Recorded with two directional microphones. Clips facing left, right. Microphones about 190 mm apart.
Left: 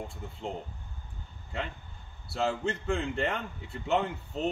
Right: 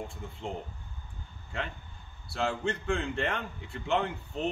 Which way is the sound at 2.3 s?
5° left (ahead or behind).